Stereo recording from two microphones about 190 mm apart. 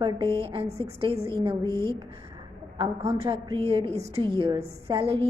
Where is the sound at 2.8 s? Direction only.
30° right (ahead or behind).